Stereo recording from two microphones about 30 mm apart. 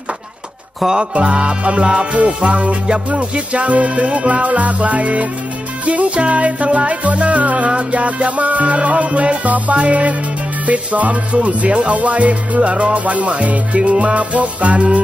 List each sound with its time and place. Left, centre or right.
1.1 s music: right